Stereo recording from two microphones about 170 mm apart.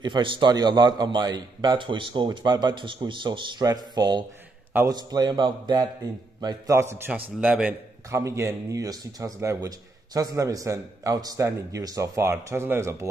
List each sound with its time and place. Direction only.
0.0 s a man's voice: 30° right (ahead or behind); by 7.7 s 5° right (ahead or behind)
8.1 s a man's voice: 20° right (ahead or behind)